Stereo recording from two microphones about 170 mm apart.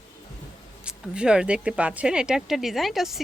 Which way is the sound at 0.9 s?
5° right (ahead or behind).